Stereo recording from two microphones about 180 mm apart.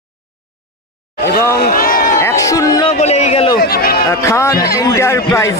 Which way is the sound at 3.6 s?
60° left (ahead or behind).